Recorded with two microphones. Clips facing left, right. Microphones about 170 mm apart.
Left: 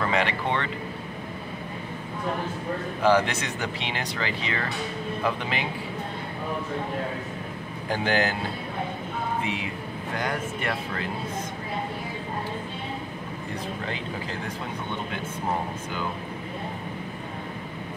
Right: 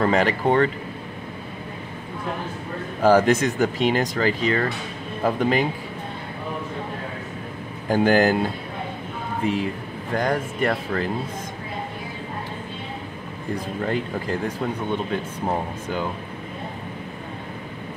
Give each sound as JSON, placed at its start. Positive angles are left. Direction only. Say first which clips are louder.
{"t": 0.0, "sound": "speech", "louder": "right 6 dB", "side_deg": -40}
{"t": 3.0, "sound": "speech", "louder": "right 6 dB", "side_deg": -45}
{"t": 7.9, "sound": "speech", "louder": "right 8 dB", "side_deg": -45}
{"t": 9.4, "sound": "speech", "louder": "right 6 dB", "side_deg": -40}
{"t": 13.8, "sound": "speech", "louder": "right 7 dB", "side_deg": -50}